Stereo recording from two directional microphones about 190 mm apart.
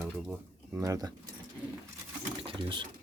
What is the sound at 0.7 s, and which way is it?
Speech, 15° right (ahead or behind).